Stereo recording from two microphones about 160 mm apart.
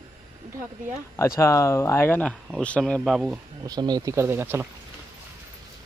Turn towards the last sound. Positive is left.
turn(degrees=-15)  # may be behind; listen again after turning